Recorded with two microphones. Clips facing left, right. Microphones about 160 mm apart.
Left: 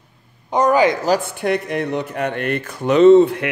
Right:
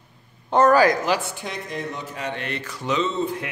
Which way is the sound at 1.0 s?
40° left (ahead or behind).